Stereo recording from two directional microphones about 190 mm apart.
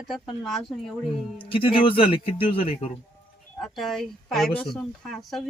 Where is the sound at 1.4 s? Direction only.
25° left (ahead or behind).